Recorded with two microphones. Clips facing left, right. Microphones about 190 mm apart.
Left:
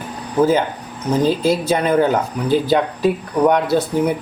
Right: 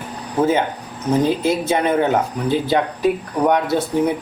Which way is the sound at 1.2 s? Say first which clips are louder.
Left 2 dB; 20° right (ahead or behind).